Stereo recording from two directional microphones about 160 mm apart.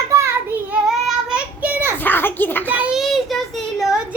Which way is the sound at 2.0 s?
10° left (ahead or behind).